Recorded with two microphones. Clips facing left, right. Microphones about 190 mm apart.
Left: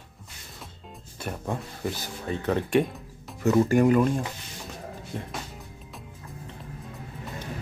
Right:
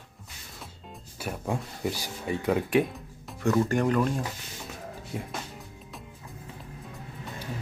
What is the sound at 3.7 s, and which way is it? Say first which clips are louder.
Speech: left 5 dB; 10° left (ahead or behind).